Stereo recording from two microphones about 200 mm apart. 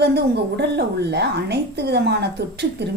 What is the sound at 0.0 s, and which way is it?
A woman's voice, 55° right (ahead or behind).